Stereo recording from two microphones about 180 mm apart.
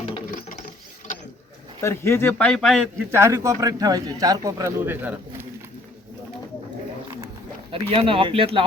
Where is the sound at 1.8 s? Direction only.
15° left (ahead or behind).